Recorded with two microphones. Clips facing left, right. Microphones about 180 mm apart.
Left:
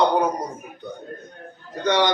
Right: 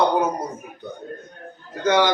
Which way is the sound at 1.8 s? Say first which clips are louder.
Right 2 dB; 5° right (ahead or behind).